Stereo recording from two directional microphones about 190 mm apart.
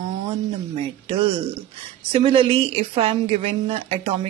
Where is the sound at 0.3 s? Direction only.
25° right (ahead or behind).